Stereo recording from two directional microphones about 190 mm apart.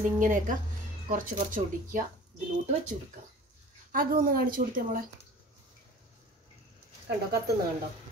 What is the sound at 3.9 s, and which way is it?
A woman's voice, 50° right (ahead or behind).